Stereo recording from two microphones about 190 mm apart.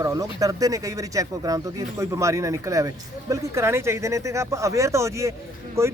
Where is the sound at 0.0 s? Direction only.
20° right (ahead or behind).